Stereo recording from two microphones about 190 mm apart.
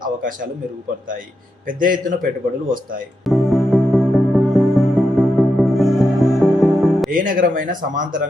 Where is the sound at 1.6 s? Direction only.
45° right (ahead or behind).